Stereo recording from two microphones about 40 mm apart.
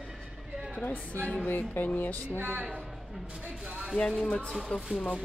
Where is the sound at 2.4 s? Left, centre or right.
Right.